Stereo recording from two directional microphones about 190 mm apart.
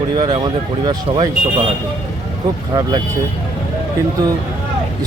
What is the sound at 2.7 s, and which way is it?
Speech, 20° right (ahead or behind).